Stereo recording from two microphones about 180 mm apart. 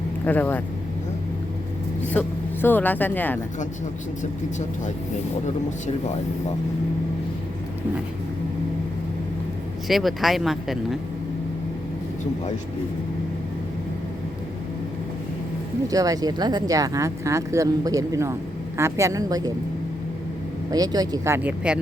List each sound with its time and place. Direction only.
0.3 s speech: 10° left (ahead or behind)
2.1 s speech: 10° left (ahead or behind)
9.9 s speech: centre (ahead or behind)
15.9 s a woman's voice: 20° right (ahead or behind)
20.7 s speech: 20° right (ahead or behind)